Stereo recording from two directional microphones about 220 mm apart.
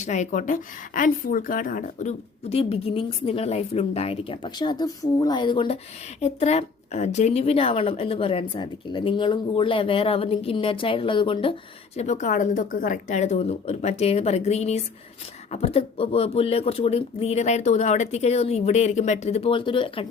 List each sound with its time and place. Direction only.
0.0 s a woman's voice: 35° left (ahead or behind)